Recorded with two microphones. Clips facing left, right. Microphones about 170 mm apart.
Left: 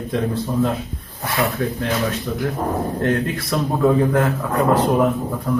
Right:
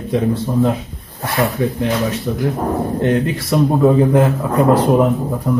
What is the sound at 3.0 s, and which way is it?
A man's voice, 20° right (ahead or behind).